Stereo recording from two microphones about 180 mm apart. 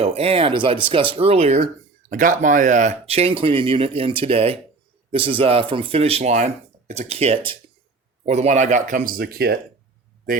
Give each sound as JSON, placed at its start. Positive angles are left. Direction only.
{"t": 0.0, "sound": "speech", "side_deg": -30}
{"t": 2.0, "sound": "speech", "side_deg": -45}